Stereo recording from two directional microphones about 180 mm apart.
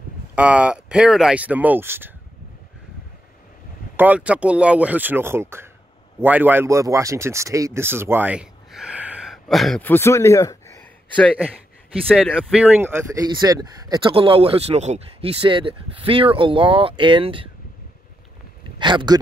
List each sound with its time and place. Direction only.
0.4 s speech: 5° right (ahead or behind)
3.9 s speech: 10° right (ahead or behind); by 10.6 s 15° left (ahead or behind)
12.1 s speech: 5° left (ahead or behind)
12.5 s speech: 5° right (ahead or behind)
13.3 s speech: 20° right (ahead or behind)
18.8 s speech: 25° right (ahead or behind)